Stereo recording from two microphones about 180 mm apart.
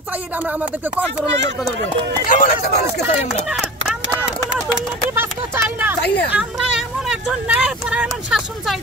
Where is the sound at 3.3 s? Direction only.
Centre (ahead or behind).